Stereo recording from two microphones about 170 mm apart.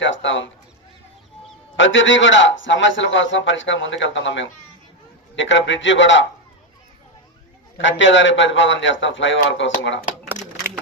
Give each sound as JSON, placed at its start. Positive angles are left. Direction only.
{"t": 0.0, "sound": "a sound", "side_deg": 90}
{"t": 1.7, "sound": "a man's voice", "side_deg": 90}
{"t": 7.8, "sound": "a man's voice", "side_deg": 90}